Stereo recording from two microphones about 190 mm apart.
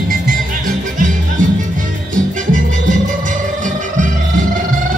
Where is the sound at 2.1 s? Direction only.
40° right (ahead or behind).